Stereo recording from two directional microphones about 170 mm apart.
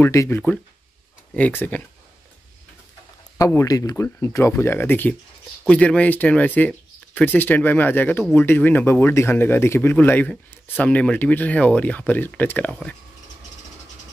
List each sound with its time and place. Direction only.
0.0 s speech: 15° left (ahead or behind)
3.3 s speech: 20° left (ahead or behind)